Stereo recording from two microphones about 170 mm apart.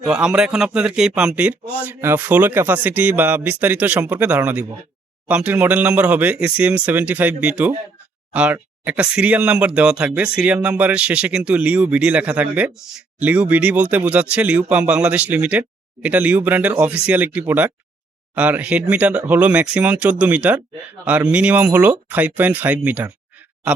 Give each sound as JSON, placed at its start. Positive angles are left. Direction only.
{"t": 0.0, "sound": "speech", "side_deg": -5}